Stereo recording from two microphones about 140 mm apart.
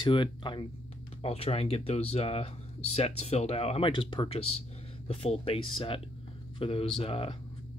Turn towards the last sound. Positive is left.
turn(degrees=40)  # may be behind; listen again after turning